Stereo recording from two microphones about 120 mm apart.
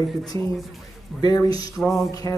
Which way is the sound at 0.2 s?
30° left (ahead or behind).